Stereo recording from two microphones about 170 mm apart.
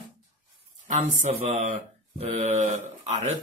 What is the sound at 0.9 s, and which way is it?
Mantra, 45° right (ahead or behind).